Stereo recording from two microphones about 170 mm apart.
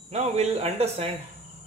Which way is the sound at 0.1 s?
40° right (ahead or behind).